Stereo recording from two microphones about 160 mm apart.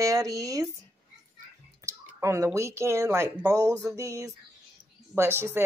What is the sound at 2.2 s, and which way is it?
A woman's voice, 20° right (ahead or behind).